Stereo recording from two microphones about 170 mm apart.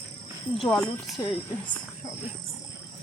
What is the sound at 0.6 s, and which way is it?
Speech, centre (ahead or behind).